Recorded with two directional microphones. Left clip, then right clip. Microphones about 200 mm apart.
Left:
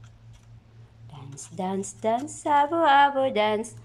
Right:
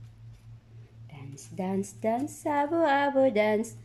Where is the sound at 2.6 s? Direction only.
30° right (ahead or behind).